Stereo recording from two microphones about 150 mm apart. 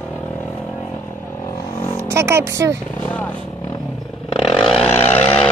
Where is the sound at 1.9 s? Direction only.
20° right (ahead or behind).